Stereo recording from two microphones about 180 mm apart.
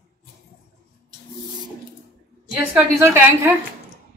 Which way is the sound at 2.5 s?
5° right (ahead or behind).